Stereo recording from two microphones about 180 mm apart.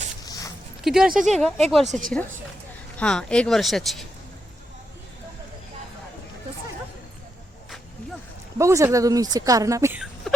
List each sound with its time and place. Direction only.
0.3 s a sound: 20° left (ahead or behind)
0.9 s speech: 5° right (ahead or behind)
1.9 s speech: 45° right (ahead or behind)
3.0 s speech: 5° left (ahead or behind)
8.5 s speech: 15° right (ahead or behind)
10.3 s a sound: 5° left (ahead or behind)